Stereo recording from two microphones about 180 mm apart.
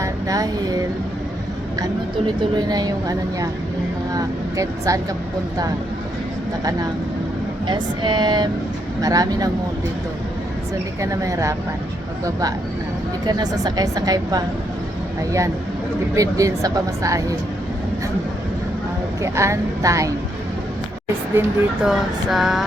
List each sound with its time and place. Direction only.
0.0 s music: 20° right (ahead or behind)
1.8 s speech: 25° right (ahead or behind)
7.7 s speech: 25° right (ahead or behind)
11.0 s speech: 15° right (ahead or behind)
19.2 s speech: 15° right (ahead or behind)
21.4 s speech: 10° right (ahead or behind)
21.8 s a sound: centre (ahead or behind)